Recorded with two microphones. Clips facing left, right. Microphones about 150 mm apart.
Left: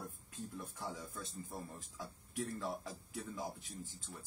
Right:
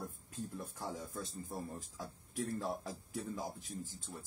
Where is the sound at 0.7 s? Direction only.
40° right (ahead or behind).